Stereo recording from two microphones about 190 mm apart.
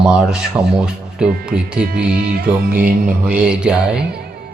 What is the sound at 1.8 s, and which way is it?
Music, 55° right (ahead or behind).